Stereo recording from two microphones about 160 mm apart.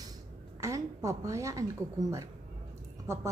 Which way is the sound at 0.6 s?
20° right (ahead or behind).